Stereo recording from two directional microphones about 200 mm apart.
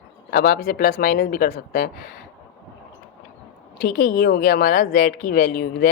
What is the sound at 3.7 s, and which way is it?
A woman's voice, 50° left (ahead or behind).